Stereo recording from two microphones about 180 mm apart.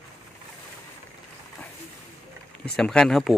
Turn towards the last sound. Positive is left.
turn(degrees=0)  # may be behind; listen again after turning